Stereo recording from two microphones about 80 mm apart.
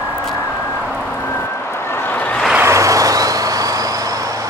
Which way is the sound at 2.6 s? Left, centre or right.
Right.